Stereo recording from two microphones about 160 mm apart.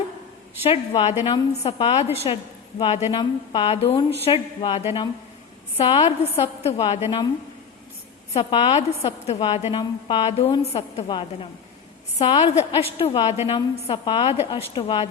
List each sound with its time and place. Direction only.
0.6 s a woman's voice: 40° left (ahead or behind)
8.3 s a woman's voice: 35° left (ahead or behind)
12.2 s a woman's voice: 40° left (ahead or behind)